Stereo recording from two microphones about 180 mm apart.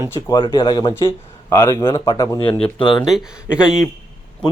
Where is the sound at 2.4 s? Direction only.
30° left (ahead or behind).